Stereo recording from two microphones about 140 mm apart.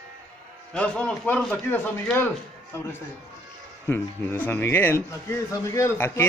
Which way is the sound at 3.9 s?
15° left (ahead or behind).